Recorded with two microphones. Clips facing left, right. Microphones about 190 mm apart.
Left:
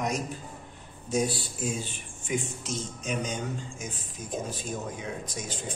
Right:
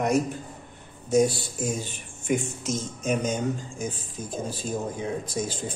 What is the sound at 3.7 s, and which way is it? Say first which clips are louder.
A man's voice: right 6 dB; 30° right (ahead or behind).